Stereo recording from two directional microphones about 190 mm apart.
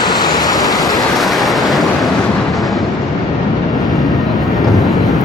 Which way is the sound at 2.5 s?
Centre (ahead or behind).